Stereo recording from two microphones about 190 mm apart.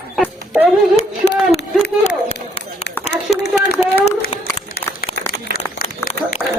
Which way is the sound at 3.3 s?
Centre (ahead or behind).